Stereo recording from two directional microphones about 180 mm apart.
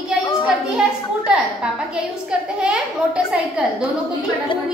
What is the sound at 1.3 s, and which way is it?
A woman's voice, 5° right (ahead or behind).